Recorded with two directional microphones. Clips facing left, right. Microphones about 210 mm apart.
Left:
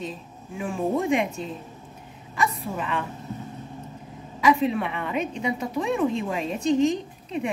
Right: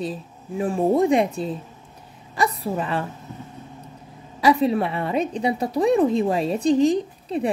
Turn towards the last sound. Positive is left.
turn(degrees=-35)  # may be behind; listen again after turning